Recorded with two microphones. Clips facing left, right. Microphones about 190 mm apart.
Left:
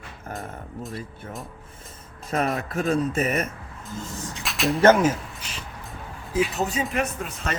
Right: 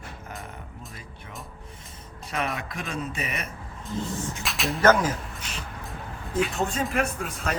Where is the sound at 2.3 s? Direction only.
40° left (ahead or behind).